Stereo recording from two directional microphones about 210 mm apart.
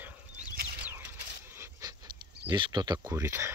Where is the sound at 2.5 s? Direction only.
20° right (ahead or behind).